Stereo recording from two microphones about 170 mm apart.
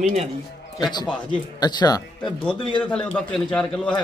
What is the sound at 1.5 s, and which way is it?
Speech, 25° left (ahead or behind).